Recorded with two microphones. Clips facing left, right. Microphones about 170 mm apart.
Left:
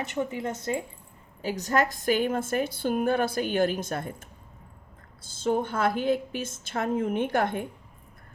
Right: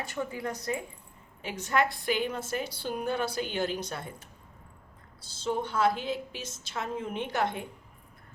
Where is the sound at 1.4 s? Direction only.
40° left (ahead or behind).